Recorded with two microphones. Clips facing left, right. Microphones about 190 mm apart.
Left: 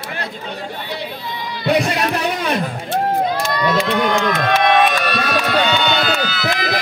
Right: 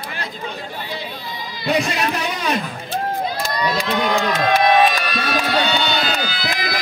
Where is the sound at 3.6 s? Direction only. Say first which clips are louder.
Left 3 dB; 60° left (ahead or behind).